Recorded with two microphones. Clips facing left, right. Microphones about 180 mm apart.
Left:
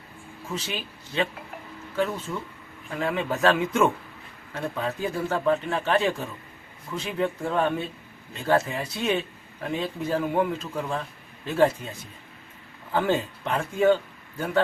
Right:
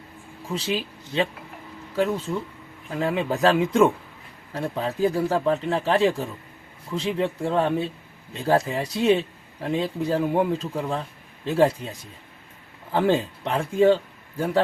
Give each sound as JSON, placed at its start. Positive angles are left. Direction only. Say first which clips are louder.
{"t": 0.4, "sound": "speech", "louder": "right 6 dB", "side_deg": -35}
{"t": 12.9, "sound": "speech", "louder": "right 3 dB", "side_deg": -30}